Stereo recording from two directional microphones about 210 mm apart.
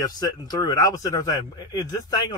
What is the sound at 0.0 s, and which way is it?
Speech, 20° left (ahead or behind).